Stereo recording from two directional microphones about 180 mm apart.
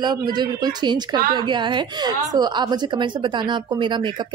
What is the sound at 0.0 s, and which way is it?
A woman's voice, 25° right (ahead or behind).